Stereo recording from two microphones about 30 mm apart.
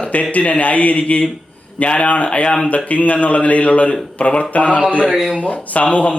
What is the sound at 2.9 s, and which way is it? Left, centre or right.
A man's voice, left.